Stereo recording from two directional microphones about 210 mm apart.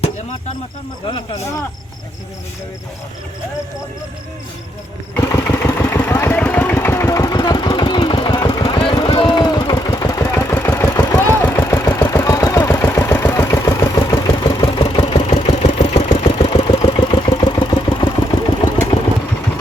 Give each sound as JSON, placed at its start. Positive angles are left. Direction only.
{"t": 5.1, "sound": "vehicle", "side_deg": 10}